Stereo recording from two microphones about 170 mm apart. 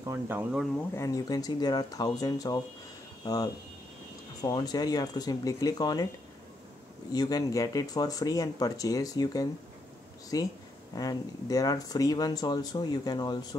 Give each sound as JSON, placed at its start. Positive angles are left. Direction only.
{"t": 0.0, "sound": "speech", "side_deg": -15}
{"t": 0.7, "sound": "speech", "side_deg": 15}
{"t": 7.1, "sound": "speech", "side_deg": 20}